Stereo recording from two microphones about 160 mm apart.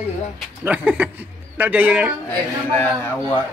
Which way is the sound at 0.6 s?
10° right (ahead or behind).